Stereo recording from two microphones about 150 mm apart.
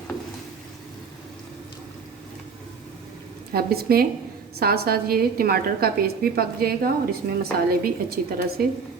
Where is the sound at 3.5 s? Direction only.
90° right.